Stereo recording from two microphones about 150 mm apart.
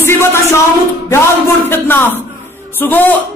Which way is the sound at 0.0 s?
15° left (ahead or behind).